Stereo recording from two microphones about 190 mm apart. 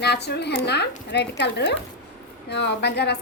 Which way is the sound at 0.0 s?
60° left (ahead or behind).